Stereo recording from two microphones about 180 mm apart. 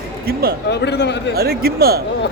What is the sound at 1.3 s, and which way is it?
Speech, 60° right (ahead or behind).